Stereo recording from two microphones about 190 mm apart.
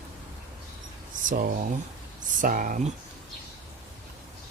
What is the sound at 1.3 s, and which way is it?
Speech, 45° right (ahead or behind).